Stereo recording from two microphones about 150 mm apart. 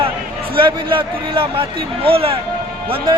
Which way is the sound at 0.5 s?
35° right (ahead or behind).